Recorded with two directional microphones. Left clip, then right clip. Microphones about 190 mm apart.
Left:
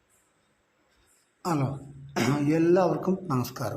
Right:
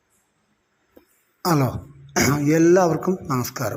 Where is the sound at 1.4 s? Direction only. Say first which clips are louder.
Right 8 dB; 25° right (ahead or behind).